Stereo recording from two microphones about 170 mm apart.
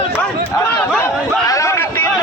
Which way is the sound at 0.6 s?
10° left (ahead or behind).